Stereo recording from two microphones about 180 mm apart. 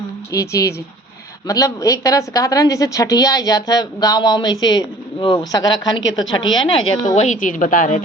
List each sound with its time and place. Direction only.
0.3 s a woman's voice: 15° left (ahead or behind)
6.0 s a woman's voice: 90° left
6.5 s a woman's voice: 25° left (ahead or behind)
7.2 s a woman's voice: 45° left (ahead or behind)